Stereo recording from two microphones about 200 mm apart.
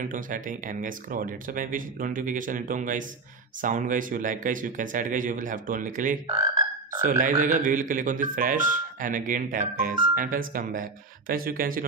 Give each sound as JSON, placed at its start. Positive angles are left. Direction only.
{"t": 0.0, "sound": "speech", "side_deg": -40}